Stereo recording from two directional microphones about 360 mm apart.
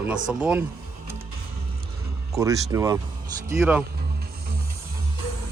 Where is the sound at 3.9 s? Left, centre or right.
Right.